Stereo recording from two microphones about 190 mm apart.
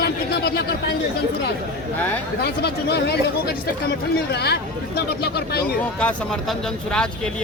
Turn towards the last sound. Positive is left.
turn(degrees=5)  # may be behind; listen again after turning